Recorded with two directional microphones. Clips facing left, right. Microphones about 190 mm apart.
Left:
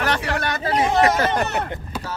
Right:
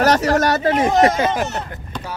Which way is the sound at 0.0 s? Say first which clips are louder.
Right 8 dB; 40° right (ahead or behind).